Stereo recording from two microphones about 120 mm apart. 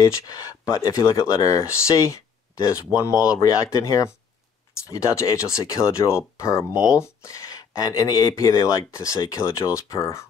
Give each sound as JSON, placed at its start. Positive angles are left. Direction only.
{"t": 0.0, "sound": "speech", "side_deg": 30}
{"t": 6.7, "sound": "speech", "side_deg": -10}
{"t": 7.0, "sound": "speech", "side_deg": 25}